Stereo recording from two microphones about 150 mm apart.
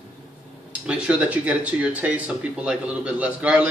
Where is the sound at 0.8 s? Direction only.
10° right (ahead or behind).